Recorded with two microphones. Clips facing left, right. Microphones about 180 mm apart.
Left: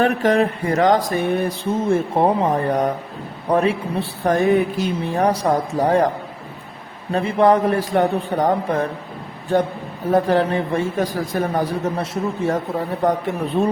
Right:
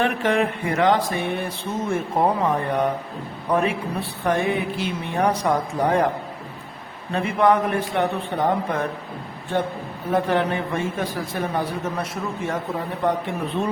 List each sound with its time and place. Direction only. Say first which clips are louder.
0.0 s speech: left 4 dB; 40° left (ahead or behind)
1.1 s a sound: left 6 dB; 45° left (ahead or behind)
1.7 s speech: left 5 dB; 30° left (ahead or behind)
7.1 s speech: left 3 dB; 35° left (ahead or behind)
11.9 s a man's voice: left 5 dB; 30° left (ahead or behind)
13.0 s speech: left 3 dB; 40° left (ahead or behind)